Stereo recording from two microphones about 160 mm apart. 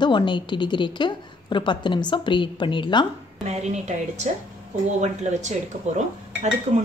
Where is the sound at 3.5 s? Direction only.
45° right (ahead or behind).